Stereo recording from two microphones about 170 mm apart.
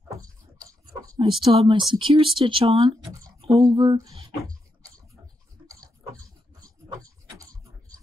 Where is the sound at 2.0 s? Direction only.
30° right (ahead or behind).